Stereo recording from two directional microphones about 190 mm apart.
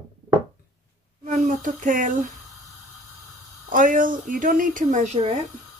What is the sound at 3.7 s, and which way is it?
Speech, 45° right (ahead or behind).